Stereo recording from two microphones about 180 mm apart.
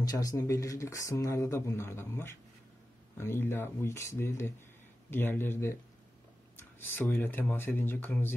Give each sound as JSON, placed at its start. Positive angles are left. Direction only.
{"t": 0.0, "sound": "speech", "side_deg": 20}